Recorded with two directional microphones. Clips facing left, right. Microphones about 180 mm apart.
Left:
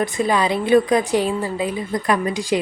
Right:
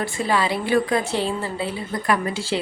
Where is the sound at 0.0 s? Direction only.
20° left (ahead or behind).